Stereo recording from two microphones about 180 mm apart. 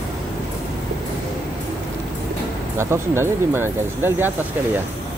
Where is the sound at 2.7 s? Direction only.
15° right (ahead or behind).